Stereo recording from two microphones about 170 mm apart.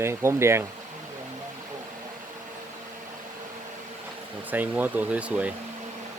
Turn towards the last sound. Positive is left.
turn(degrees=-10)  # may be behind; listen again after turning